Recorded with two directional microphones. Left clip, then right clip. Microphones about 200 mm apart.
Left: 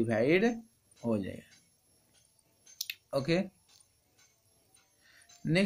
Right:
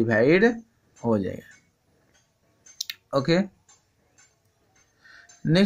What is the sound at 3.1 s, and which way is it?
Speech, 25° right (ahead or behind).